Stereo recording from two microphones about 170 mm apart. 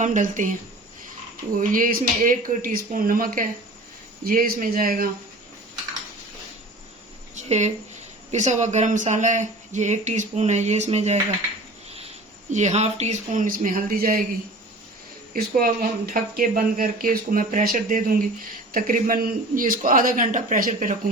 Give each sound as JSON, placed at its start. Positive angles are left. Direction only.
{"t": 0.0, "sound": "speech", "side_deg": -50}
{"t": 1.5, "sound": "speech", "side_deg": -55}
{"t": 7.4, "sound": "speech", "side_deg": -40}
{"t": 12.5, "sound": "speech", "side_deg": -40}
{"t": 15.3, "sound": "speech", "side_deg": -60}